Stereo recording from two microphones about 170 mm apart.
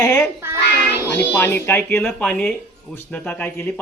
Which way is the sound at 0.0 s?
15° left (ahead or behind).